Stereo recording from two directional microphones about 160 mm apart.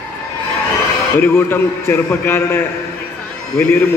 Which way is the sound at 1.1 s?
15° left (ahead or behind).